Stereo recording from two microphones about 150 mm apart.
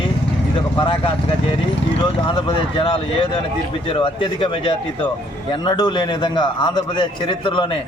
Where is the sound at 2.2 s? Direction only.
35° left (ahead or behind).